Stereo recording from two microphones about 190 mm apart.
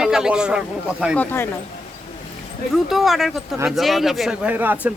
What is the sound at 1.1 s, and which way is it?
Speech, 10° left (ahead or behind).